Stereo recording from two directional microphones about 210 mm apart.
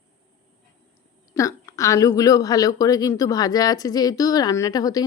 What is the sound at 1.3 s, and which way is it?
Speech, 15° left (ahead or behind).